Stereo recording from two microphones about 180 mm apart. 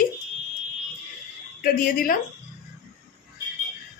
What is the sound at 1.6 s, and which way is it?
Speech, 55° left (ahead or behind).